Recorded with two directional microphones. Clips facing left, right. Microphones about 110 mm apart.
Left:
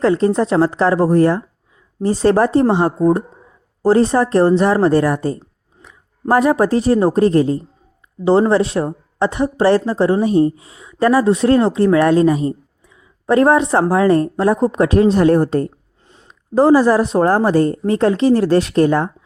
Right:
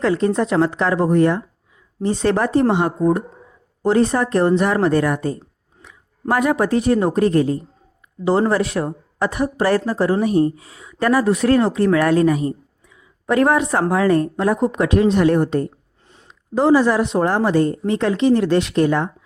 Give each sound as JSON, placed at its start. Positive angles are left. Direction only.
{"t": 0.0, "sound": "a woman's voice", "side_deg": 30}